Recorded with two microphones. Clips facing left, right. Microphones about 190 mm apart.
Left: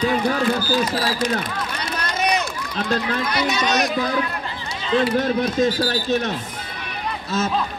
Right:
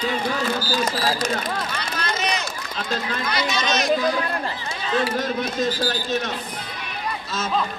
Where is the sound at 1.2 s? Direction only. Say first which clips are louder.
Left 2 dB; 50° right (ahead or behind).